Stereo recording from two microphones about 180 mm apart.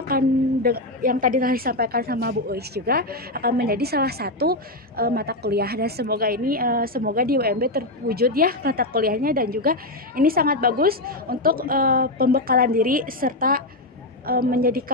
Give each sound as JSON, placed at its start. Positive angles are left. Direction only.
{"t": 0.1, "sound": "a woman's voice", "side_deg": -55}